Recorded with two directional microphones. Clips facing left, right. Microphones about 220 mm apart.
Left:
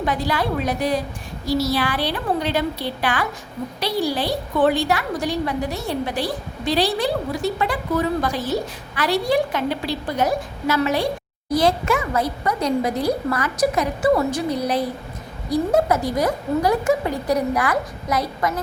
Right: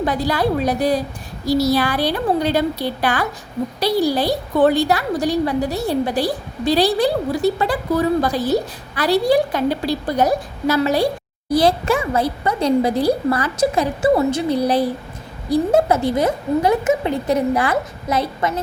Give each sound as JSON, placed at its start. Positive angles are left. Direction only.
{"t": 0.0, "sound": "a woman's voice", "side_deg": -35}